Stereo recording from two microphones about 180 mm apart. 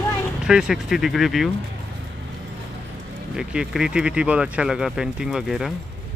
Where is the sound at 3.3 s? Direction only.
5° right (ahead or behind).